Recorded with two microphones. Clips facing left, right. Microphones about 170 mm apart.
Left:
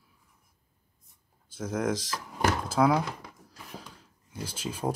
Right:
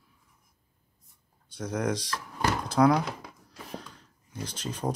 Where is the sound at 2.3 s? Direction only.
5° left (ahead or behind).